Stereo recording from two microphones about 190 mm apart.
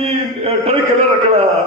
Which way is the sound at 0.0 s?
30° right (ahead or behind).